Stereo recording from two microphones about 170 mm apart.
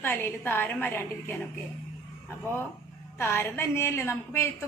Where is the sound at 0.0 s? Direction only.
10° left (ahead or behind).